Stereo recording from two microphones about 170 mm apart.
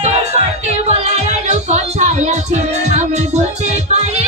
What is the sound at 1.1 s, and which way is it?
Music, 40° right (ahead or behind).